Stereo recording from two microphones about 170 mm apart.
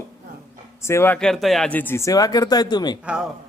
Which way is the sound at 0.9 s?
15° left (ahead or behind).